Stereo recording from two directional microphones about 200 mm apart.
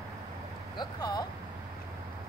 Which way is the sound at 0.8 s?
20° left (ahead or behind).